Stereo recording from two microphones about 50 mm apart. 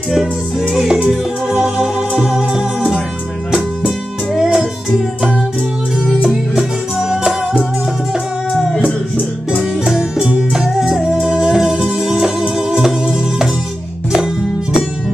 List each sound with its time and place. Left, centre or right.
0.1 s music: centre
4.4 s music: centre
6.2 s music: centre
9.1 s music: left
9.8 s music: centre